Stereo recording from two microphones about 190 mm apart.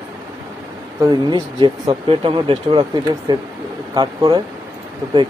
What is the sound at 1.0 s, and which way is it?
Speech, 25° right (ahead or behind).